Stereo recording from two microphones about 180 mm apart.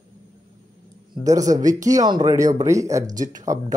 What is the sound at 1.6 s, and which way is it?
A man's voice, 20° right (ahead or behind).